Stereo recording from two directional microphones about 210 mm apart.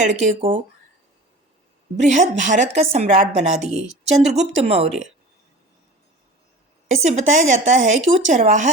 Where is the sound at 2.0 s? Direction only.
35° right (ahead or behind).